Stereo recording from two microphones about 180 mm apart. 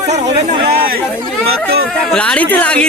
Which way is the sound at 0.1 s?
40° right (ahead or behind).